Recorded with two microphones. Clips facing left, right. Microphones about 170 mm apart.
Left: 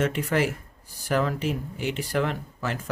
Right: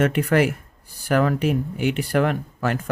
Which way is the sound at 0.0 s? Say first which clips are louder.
Right 5 dB; 60° right (ahead or behind).